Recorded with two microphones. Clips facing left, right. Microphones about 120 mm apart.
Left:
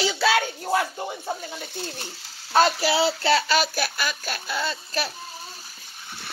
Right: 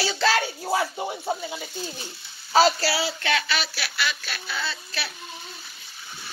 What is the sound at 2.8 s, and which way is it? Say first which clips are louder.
Speech: left 5 dB; 25° left (ahead or behind).